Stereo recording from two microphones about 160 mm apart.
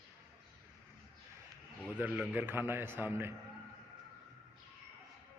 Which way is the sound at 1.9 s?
10° right (ahead or behind).